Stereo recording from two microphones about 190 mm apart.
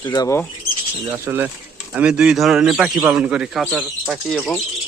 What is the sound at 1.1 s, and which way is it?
A man's voice, 10° right (ahead or behind).